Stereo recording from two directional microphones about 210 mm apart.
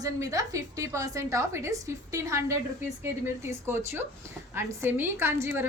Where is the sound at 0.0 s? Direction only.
15° right (ahead or behind).